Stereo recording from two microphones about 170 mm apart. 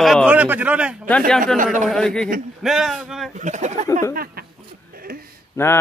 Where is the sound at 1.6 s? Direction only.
50° right (ahead or behind).